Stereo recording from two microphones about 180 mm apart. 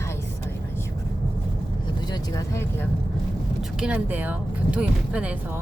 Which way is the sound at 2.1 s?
15° left (ahead or behind).